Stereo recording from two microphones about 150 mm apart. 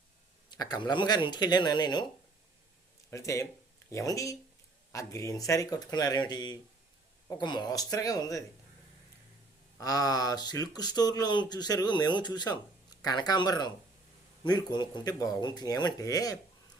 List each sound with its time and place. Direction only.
0.5 s speech: 25° left (ahead or behind)
3.1 s speech: 20° left (ahead or behind)
9.7 s speech: 25° left (ahead or behind)